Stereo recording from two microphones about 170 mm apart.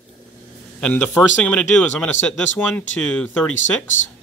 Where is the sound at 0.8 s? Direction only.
5° left (ahead or behind).